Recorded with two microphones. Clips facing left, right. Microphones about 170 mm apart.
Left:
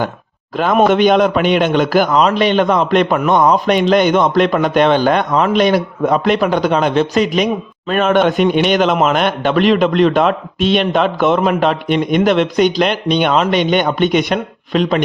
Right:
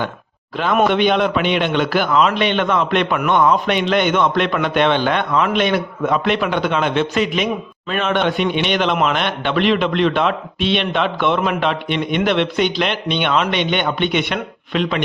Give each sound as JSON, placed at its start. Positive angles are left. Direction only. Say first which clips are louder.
{"t": 0.5, "sound": "a man's voice", "louder": "left 4 dB", "side_deg": 45}